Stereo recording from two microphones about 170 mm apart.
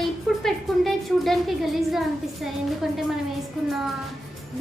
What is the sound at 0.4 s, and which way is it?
A woman's voice, centre (ahead or behind).